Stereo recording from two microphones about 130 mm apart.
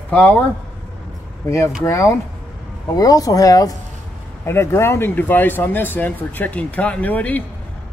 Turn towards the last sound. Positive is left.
turn(degrees=10)  # may be behind; listen again after turning